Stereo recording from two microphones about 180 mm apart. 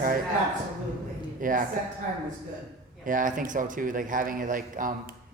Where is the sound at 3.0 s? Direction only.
45° right (ahead or behind).